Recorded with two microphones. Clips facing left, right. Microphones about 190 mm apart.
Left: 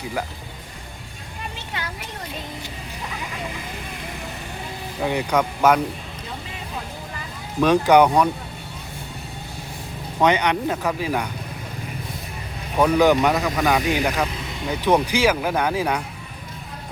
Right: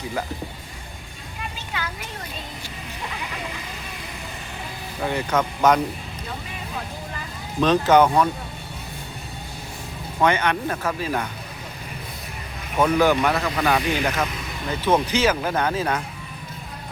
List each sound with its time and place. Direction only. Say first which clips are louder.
5.0 s speech: left 2 dB; 15° left (ahead or behind)
7.6 s speech: left 1 dB; 10° left (ahead or behind)
10.2 s speech: left 2 dB; 15° left (ahead or behind)
12.8 s speech: left 2 dB; 15° left (ahead or behind)